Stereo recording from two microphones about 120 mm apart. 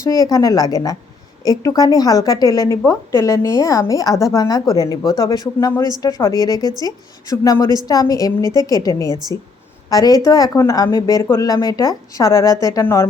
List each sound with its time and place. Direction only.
0.0 s a woman's voice: 30° left (ahead or behind)
6.6 s speech: 35° right (ahead or behind)
6.8 s a woman's voice: 30° left (ahead or behind)